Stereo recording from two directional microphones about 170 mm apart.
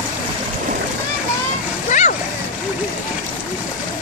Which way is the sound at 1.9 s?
45° left (ahead or behind).